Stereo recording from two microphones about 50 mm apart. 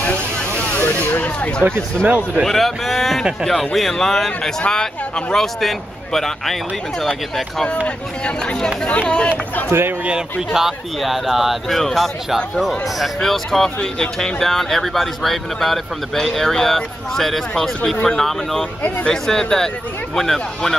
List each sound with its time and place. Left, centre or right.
0.0 s vehicle: left
0.8 s a sound: left
2.0 s speech: right
2.4 s speech: centre
7.6 s speech: left
9.7 s speech: right
10.5 s speech: centre